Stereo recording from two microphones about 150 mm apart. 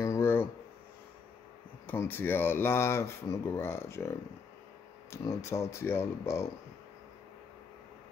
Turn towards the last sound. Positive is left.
turn(degrees=20)  # may be behind; listen again after turning